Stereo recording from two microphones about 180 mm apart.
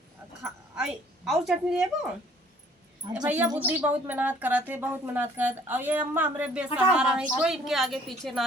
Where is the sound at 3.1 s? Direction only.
5° right (ahead or behind).